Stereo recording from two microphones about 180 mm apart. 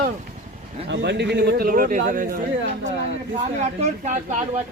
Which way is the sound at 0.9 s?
75° right (ahead or behind).